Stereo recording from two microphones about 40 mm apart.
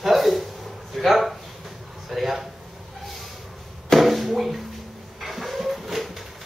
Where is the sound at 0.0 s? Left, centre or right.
Centre.